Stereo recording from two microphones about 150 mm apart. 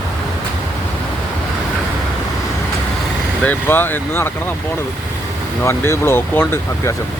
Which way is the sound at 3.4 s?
10° left (ahead or behind).